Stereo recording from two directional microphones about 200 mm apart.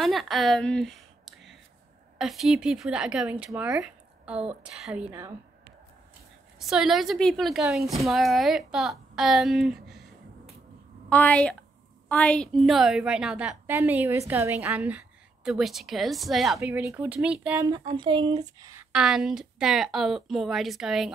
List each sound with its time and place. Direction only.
0.0 s a sound: centre (ahead or behind)
2.1 s a woman's voice: centre (ahead or behind)
6.6 s a woman's voice: centre (ahead or behind)
11.1 s a woman's voice: 5° left (ahead or behind)
16.5 s speech: 10° right (ahead or behind)
17.6 s a woman's voice: 20° right (ahead or behind)
18.9 s a woman's voice: centre (ahead or behind)